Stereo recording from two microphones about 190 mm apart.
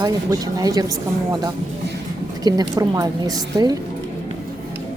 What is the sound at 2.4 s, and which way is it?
A woman's voice, 20° right (ahead or behind).